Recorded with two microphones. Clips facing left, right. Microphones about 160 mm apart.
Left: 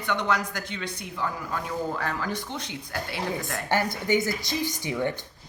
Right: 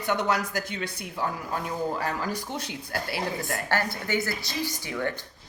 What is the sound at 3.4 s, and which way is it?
A woman's voice, 20° left (ahead or behind).